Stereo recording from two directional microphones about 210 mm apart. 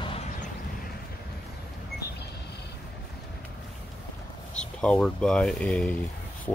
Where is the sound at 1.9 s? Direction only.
50° left (ahead or behind).